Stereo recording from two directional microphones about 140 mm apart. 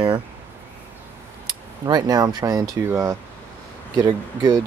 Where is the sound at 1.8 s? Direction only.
25° right (ahead or behind).